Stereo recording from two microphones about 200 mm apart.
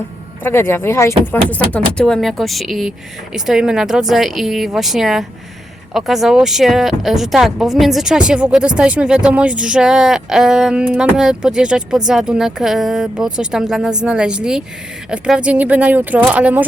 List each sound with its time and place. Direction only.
0.4 s speech: 10° left (ahead or behind); by 16.6 s 5° right (ahead or behind)